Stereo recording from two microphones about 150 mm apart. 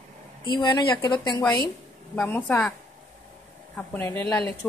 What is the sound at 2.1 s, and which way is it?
Speech, 10° left (ahead or behind).